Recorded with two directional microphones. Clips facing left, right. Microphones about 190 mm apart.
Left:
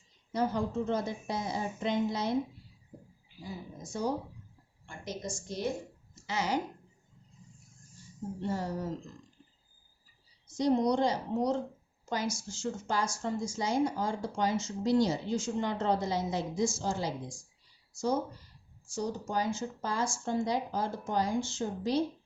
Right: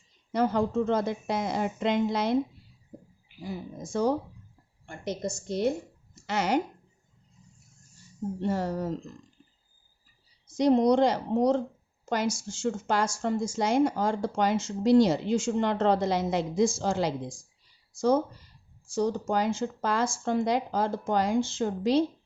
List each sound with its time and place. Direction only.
0.3 s speech: 80° right
3.4 s speech: 90° right
4.9 s a woman's voice: 65° right (ahead or behind)
8.4 s speech: 65° right (ahead or behind)
10.6 s a woman's voice: 90° right
18.9 s speech: 90° right